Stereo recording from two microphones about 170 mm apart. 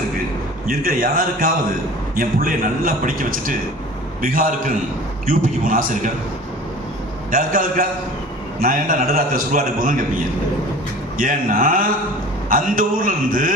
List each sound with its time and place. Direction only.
0.7 s a man's voice: 55° right (ahead or behind)
7.3 s a man's voice: 55° right (ahead or behind)
11.2 s a man's voice: 55° right (ahead or behind)